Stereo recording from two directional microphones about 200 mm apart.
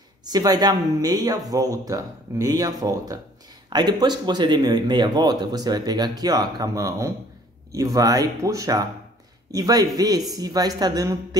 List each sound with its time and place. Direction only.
0.2 s speech: 20° right (ahead or behind)